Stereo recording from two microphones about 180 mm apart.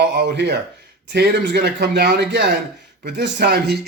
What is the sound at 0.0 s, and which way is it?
Speech, 70° right (ahead or behind).